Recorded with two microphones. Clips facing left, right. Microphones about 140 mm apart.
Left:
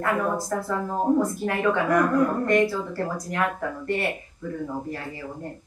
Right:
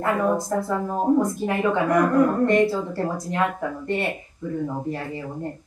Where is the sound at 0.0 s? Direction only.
20° right (ahead or behind).